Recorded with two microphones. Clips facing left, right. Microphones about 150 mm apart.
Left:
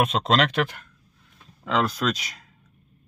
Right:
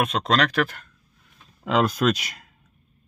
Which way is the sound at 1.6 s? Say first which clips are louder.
Right 3 dB; 15° right (ahead or behind).